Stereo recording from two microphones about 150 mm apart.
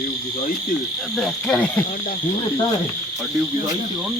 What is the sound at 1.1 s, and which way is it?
Cricket, 5° left (ahead or behind).